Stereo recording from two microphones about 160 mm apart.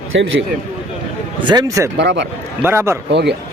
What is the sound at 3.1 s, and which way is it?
Speech, 90° right.